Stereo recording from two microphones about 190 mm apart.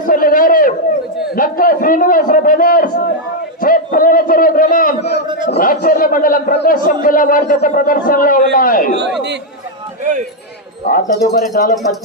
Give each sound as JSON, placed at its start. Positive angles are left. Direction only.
{"t": 0.0, "sound": "a sound", "side_deg": 45}
{"t": 1.4, "sound": "a man's voice", "side_deg": 45}
{"t": 3.6, "sound": "a sound", "side_deg": 45}
{"t": 5.5, "sound": "a man's voice", "side_deg": 50}
{"t": 10.0, "sound": "speech", "side_deg": -40}
{"t": 10.8, "sound": "a man's voice", "side_deg": 55}